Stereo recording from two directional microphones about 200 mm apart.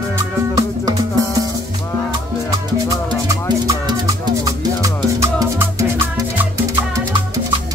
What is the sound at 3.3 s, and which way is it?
Music, 15° right (ahead or behind).